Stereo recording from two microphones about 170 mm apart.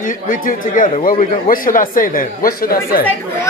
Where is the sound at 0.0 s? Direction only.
50° left (ahead or behind).